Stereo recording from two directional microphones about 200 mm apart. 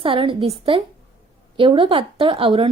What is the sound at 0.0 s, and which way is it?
A woman's voice, 25° right (ahead or behind).